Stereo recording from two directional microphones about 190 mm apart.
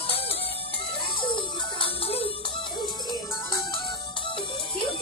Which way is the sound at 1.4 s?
30° left (ahead or behind).